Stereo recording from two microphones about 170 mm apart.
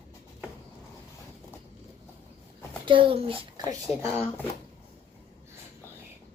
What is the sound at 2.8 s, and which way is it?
Speech, 30° right (ahead or behind).